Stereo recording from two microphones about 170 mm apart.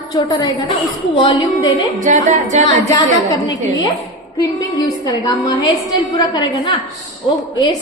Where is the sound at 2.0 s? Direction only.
45° right (ahead or behind).